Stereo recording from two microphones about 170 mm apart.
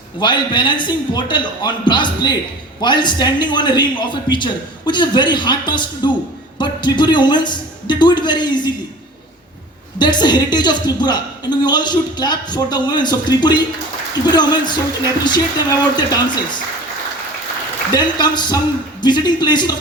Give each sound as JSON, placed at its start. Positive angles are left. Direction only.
{"t": 0.2, "sound": "a woman's voice", "side_deg": 25}
{"t": 10.0, "sound": "a woman's voice", "side_deg": 25}
{"t": 17.9, "sound": "a woman's voice", "side_deg": 25}